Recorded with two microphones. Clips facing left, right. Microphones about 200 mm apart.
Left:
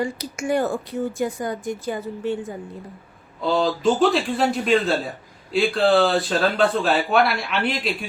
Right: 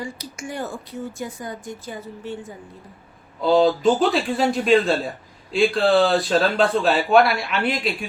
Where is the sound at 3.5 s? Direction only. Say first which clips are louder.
Right 4 dB; centre (ahead or behind).